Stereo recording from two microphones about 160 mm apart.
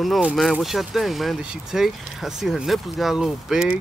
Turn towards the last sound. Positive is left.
turn(degrees=-5)  # may be behind; listen again after turning